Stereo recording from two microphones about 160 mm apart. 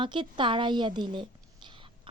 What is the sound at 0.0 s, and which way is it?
A woman's voice, 30° right (ahead or behind).